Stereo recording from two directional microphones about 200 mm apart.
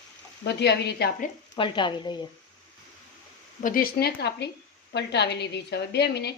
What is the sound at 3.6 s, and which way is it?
A woman's voice, 45° left (ahead or behind).